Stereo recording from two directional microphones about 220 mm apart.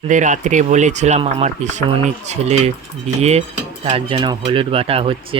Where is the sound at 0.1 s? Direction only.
35° right (ahead or behind).